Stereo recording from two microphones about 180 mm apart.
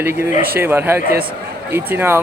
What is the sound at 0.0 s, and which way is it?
Speech, 15° right (ahead or behind).